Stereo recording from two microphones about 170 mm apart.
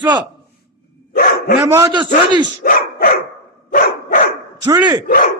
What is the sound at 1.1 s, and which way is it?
Dog, 60° left (ahead or behind).